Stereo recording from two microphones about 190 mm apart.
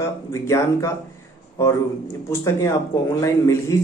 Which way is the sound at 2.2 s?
15° left (ahead or behind).